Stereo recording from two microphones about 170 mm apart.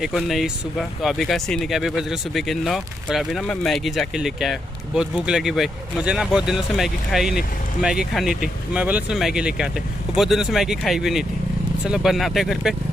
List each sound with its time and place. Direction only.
0.0 s speech: centre (ahead or behind)